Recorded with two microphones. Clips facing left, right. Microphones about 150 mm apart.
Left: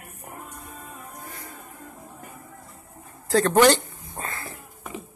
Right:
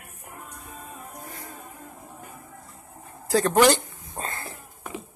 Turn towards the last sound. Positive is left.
turn(degrees=-20)  # may be behind; listen again after turning